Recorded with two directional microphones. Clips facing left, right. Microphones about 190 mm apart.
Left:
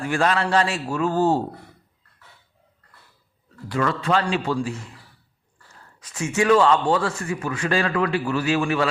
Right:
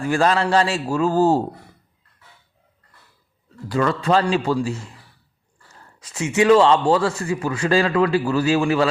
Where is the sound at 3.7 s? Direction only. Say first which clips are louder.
Right 3 dB; 35° right (ahead or behind).